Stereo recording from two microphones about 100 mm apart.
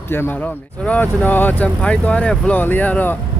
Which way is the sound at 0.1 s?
20° left (ahead or behind).